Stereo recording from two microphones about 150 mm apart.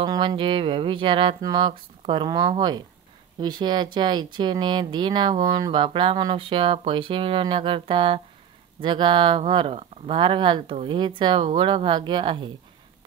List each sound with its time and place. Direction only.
0.0 s speech: 30° right (ahead or behind)